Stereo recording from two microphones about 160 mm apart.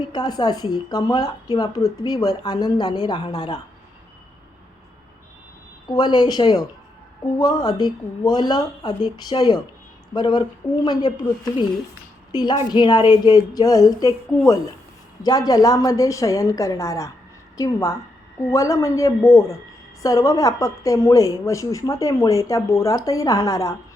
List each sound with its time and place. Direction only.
0.1 s a woman's voice: 25° left (ahead or behind)
5.9 s a woman's voice: 25° left (ahead or behind)
12.3 s a woman's voice: 25° left (ahead or behind)